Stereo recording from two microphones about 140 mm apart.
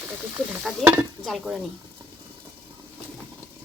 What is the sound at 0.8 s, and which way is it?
Speech, centre (ahead or behind).